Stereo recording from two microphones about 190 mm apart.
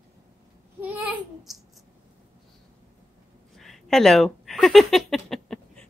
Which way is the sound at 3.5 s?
Centre (ahead or behind).